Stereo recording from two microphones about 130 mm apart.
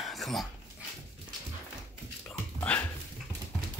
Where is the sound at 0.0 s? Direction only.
Centre (ahead or behind).